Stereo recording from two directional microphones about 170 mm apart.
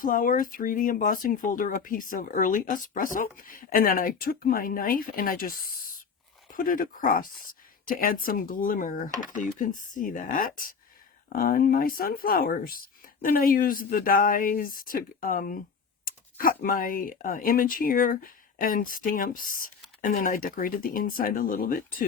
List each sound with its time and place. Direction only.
0.0 s speech: 55° left (ahead or behind)